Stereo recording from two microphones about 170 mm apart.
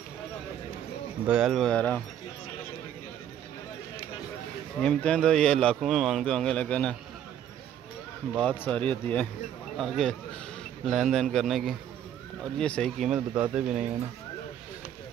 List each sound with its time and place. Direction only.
1.2 s a man's voice: 5° right (ahead or behind)
4.7 s a man's voice: 5° left (ahead or behind)
8.4 s a man's voice: 10° left (ahead or behind); by 13.8 s 5° right (ahead or behind)